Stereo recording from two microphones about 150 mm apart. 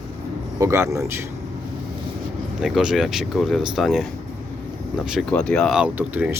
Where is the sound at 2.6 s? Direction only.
5° right (ahead or behind).